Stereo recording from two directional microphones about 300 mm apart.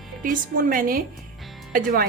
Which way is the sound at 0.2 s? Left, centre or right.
Right.